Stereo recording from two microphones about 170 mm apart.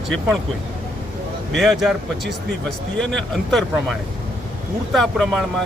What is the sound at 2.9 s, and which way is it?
Speech, 5° left (ahead or behind).